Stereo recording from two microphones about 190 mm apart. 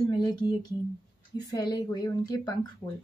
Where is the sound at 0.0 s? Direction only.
20° left (ahead or behind).